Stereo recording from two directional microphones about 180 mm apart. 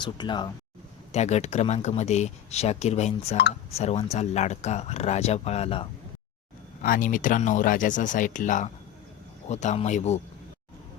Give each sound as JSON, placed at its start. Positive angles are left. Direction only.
{"t": 0.0, "sound": "speech", "side_deg": 25}
{"t": 1.1, "sound": "speech", "side_deg": 40}
{"t": 6.8, "sound": "speech", "side_deg": 50}